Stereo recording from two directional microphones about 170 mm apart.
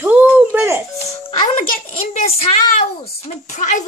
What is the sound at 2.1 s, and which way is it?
Speech, 40° left (ahead or behind).